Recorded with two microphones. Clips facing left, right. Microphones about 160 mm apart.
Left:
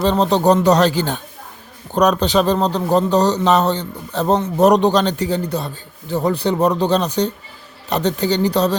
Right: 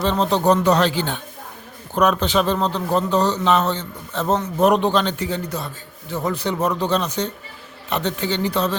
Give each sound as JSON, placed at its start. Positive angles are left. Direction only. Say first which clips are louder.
{"t": 0.0, "sound": "a man's voice", "louder": "left 4 dB", "side_deg": 35}